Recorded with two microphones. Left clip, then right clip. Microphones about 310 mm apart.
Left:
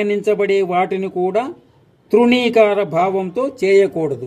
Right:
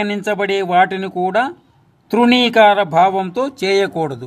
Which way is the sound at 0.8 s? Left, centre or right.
Right.